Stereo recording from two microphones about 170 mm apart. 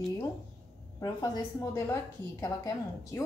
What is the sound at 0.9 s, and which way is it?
A woman's voice, 20° left (ahead or behind).